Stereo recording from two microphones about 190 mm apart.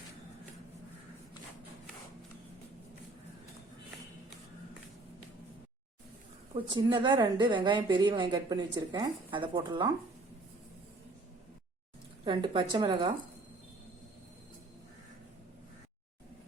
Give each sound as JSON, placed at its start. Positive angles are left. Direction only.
{"t": 6.5, "sound": "a woman's voice", "side_deg": -25}
{"t": 12.2, "sound": "a woman's voice", "side_deg": -25}